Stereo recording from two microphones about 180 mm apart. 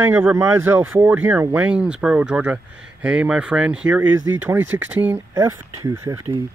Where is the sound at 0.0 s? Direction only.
10° right (ahead or behind).